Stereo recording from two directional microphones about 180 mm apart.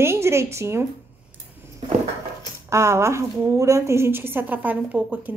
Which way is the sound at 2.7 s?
15° right (ahead or behind).